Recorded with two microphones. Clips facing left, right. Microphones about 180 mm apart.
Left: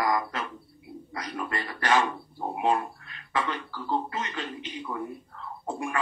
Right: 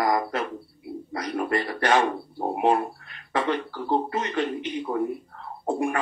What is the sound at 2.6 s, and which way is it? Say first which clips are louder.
Speech: right 4 dB; 60° right (ahead or behind).